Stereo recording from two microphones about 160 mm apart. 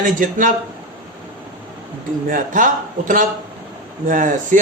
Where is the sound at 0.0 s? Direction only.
55° right (ahead or behind).